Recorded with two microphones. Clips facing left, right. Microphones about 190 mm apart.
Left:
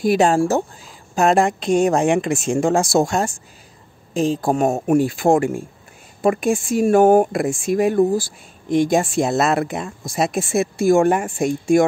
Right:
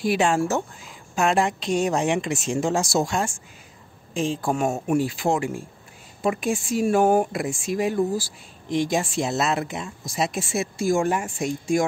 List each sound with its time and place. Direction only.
0.0 s speech: 40° left (ahead or behind); by 11.8 s 55° left (ahead or behind)